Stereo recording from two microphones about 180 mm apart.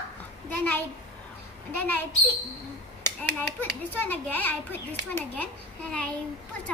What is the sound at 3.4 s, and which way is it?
A child's voice, 10° left (ahead or behind).